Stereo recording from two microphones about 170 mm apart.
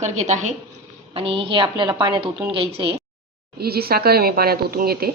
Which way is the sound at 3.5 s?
65° right (ahead or behind).